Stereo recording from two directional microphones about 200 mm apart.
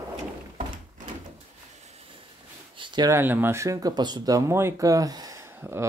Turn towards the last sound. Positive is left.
turn(degrees=-15)  # may be behind; listen again after turning